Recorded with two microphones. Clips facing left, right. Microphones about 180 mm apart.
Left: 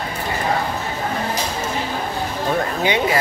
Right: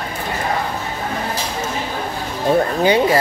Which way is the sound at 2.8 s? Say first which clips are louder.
Right 4 dB; 35° right (ahead or behind).